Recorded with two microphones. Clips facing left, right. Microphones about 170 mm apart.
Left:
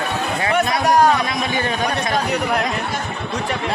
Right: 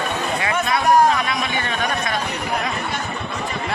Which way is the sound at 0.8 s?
75° left (ahead or behind).